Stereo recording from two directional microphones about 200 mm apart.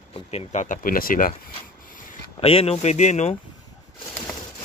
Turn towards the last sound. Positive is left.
turn(degrees=35)  # may be behind; listen again after turning